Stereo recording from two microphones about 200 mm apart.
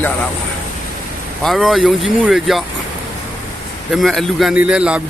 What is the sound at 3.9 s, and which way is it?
Speech, centre (ahead or behind).